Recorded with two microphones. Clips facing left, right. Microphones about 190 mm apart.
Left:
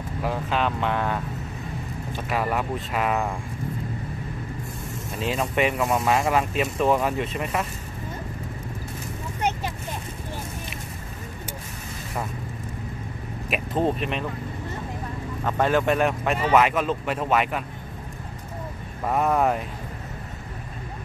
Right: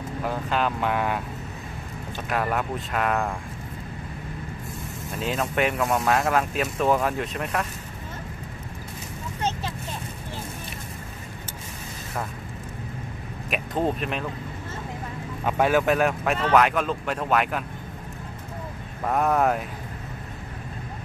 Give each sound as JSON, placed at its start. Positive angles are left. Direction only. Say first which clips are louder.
{"t": 0.2, "sound": "speech", "louder": "left 1 dB", "side_deg": 0}
{"t": 2.2, "sound": "speech", "louder": "even", "side_deg": 0}
{"t": 5.1, "sound": "speech", "louder": "left 1 dB", "side_deg": 0}
{"t": 13.5, "sound": "speech", "louder": "left 1 dB", "side_deg": 0}
{"t": 15.4, "sound": "speech", "louder": "right 1 dB", "side_deg": -10}
{"t": 19.0, "sound": "speech", "louder": "even", "side_deg": 0}